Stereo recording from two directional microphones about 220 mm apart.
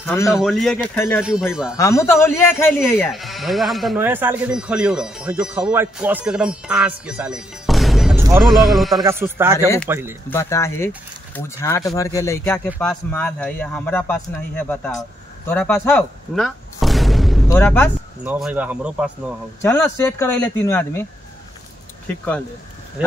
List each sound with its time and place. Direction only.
0.0 s a man's voice: 10° left (ahead or behind)
1.2 s speech: 5° right (ahead or behind)
1.8 s a man's voice: 15° left (ahead or behind)
9.0 s speech: 10° right (ahead or behind)
10.3 s a man's voice: 10° left (ahead or behind)
18.2 s speech: 5° right (ahead or behind)
19.6 s a man's voice: 10° left (ahead or behind)